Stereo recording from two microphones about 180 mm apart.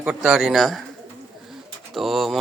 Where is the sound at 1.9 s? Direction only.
Centre (ahead or behind).